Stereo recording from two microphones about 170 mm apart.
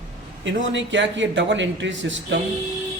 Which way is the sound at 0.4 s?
90° right.